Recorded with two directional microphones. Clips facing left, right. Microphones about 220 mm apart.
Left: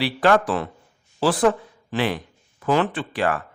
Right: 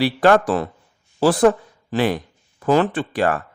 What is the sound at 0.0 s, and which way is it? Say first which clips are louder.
Speech: right 3 dB; 45° right (ahead or behind).